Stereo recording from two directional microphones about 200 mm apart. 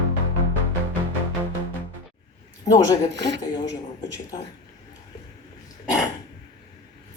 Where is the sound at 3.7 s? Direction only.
15° left (ahead or behind).